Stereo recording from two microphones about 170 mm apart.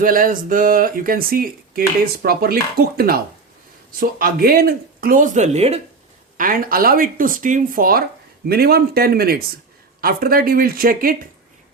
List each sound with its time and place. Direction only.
0.0 s speech: 55° right (ahead or behind); by 5.8 s 40° right (ahead or behind)
6.3 s speech: 55° right (ahead or behind)